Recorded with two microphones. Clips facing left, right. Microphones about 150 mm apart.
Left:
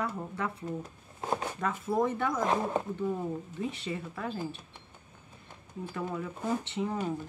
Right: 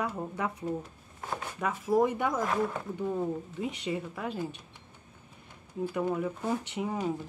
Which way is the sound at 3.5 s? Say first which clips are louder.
Right 2 dB; 15° right (ahead or behind).